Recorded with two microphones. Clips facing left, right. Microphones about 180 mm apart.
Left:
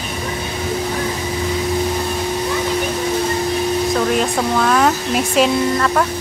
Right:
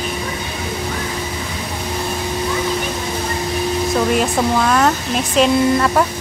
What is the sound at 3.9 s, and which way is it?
Speech, 5° right (ahead or behind).